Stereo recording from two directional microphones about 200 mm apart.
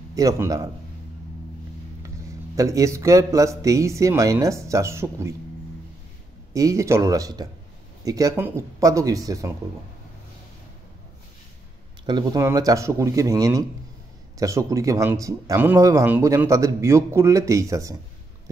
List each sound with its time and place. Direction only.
0.1 s speech: 15° right (ahead or behind)
2.0 s speech: 15° right (ahead or behind)
6.5 s speech: 15° right (ahead or behind)
12.1 s speech: 20° right (ahead or behind)